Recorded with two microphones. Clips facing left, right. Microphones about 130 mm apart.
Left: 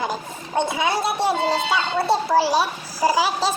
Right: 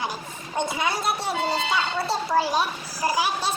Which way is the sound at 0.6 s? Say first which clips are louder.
Left 4 dB; 25° left (ahead or behind).